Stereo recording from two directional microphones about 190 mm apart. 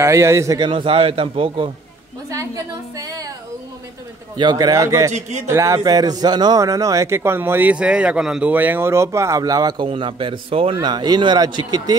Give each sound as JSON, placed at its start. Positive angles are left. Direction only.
{"t": 0.0, "sound": "a man's voice", "side_deg": -15}
{"t": 2.3, "sound": "a woman's voice", "side_deg": -15}
{"t": 4.4, "sound": "a man's voice", "side_deg": -20}